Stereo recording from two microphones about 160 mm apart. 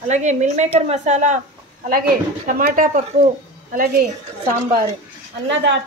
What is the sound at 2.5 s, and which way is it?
Speech, 60° right (ahead or behind).